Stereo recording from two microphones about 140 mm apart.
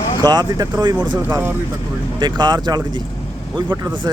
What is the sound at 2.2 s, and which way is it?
Speech, 30° right (ahead or behind).